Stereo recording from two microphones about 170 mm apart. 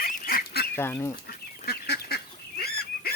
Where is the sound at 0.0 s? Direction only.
60° left (ahead or behind).